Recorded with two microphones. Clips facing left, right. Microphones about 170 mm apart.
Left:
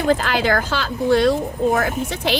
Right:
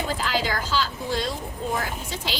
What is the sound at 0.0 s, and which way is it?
A woman's voice, 60° left (ahead or behind).